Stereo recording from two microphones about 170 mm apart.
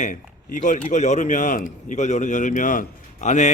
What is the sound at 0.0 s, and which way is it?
A man's voice, 45° left (ahead or behind).